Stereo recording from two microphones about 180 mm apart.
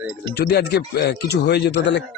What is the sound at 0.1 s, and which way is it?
Speech, 65° left (ahead or behind).